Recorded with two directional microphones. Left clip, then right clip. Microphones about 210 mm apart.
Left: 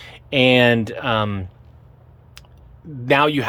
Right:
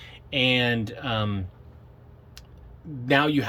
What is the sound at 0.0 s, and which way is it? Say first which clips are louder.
Speech: left 7 dB; 20° left (ahead or behind).